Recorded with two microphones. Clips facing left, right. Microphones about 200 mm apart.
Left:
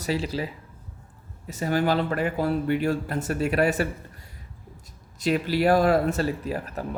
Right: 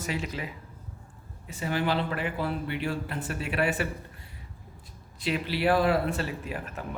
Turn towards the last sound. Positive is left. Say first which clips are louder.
# left 5 dB
turn(degrees=35)  # may be behind; listen again after turning